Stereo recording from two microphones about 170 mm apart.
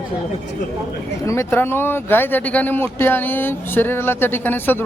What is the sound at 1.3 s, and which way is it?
Speech, 15° left (ahead or behind).